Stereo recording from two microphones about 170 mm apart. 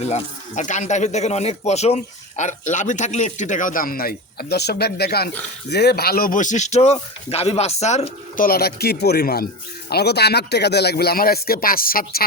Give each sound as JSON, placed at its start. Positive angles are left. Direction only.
{"t": 0.0, "sound": "a man's voice", "side_deg": 45}
{"t": 8.4, "sound": "speech", "side_deg": 65}